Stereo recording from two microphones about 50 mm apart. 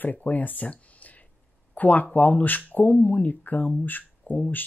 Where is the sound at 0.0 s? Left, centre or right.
Left.